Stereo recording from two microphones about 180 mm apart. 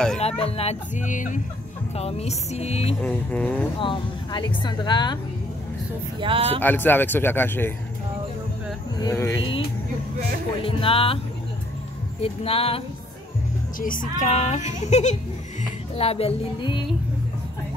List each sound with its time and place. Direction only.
0.2 s a child's voice: 35° left (ahead or behind)
3.0 s speech: 10° left (ahead or behind)
3.8 s a woman's voice: 25° left (ahead or behind)
6.2 s speech: 30° right (ahead or behind)
6.6 s speech: 10° left (ahead or behind)
9.0 s speech: 15° left (ahead or behind)
10.6 s a child's voice: 30° left (ahead or behind)
12.2 s a child's voice: 35° left (ahead or behind)
13.7 s a child's voice: 50° left (ahead or behind); by 16.8 s 25° left (ahead or behind)